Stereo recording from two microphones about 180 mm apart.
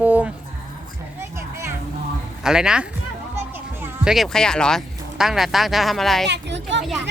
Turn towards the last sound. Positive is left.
turn(degrees=-80)